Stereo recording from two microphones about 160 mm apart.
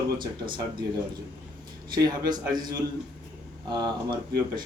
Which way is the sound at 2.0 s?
25° right (ahead or behind).